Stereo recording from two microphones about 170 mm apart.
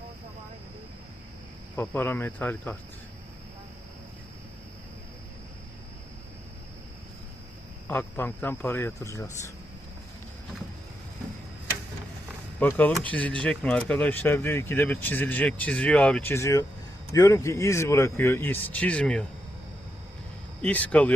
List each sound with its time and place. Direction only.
1.7 s speech: 15° left (ahead or behind)
7.9 s speech: 10° left (ahead or behind)
12.5 s speech: 10° left (ahead or behind)
20.6 s speech: 10° left (ahead or behind)